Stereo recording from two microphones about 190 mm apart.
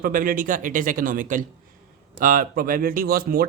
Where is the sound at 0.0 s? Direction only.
45° right (ahead or behind).